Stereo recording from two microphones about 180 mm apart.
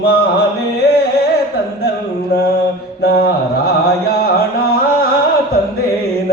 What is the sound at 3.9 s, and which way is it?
Carnatic music, 60° left (ahead or behind).